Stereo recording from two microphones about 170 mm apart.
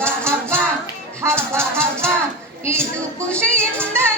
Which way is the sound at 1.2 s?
15° right (ahead or behind).